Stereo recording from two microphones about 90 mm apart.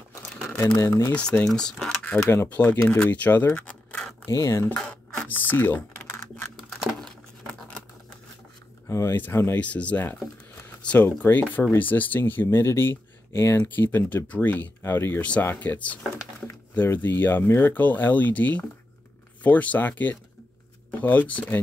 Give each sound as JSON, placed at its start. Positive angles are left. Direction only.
{"t": 0.7, "sound": "speech", "side_deg": 30}
{"t": 1.1, "sound": "speech", "side_deg": 15}
{"t": 2.2, "sound": "speech", "side_deg": 25}
{"t": 4.3, "sound": "speech", "side_deg": 35}
{"t": 4.7, "sound": "speech", "side_deg": 10}
{"t": 8.8, "sound": "speech", "side_deg": 30}
{"t": 9.7, "sound": "speech", "side_deg": 15}
{"t": 10.8, "sound": "a sound", "side_deg": 15}
{"t": 11.1, "sound": "speech", "side_deg": 20}